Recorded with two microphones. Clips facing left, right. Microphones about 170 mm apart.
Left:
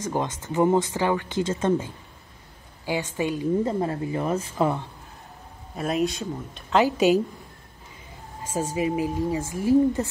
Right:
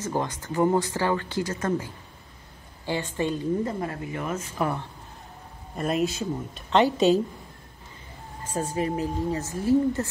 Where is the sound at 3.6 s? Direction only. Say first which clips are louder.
Left 4 dB; 30° left (ahead or behind).